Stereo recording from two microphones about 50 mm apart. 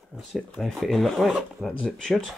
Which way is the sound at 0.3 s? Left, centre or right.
Centre.